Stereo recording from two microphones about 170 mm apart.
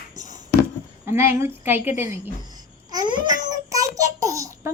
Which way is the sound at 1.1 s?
15° right (ahead or behind).